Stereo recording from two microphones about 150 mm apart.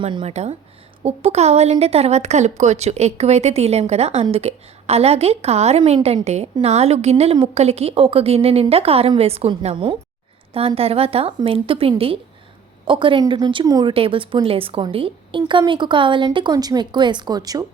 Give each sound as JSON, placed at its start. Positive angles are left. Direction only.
{"t": 0.0, "sound": "a woman's voice", "side_deg": -35}